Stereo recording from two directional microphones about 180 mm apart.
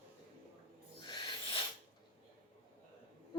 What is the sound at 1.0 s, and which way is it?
Owl, 25° left (ahead or behind).